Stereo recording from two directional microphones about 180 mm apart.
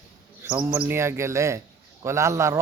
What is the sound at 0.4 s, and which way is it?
A man's voice, 15° right (ahead or behind).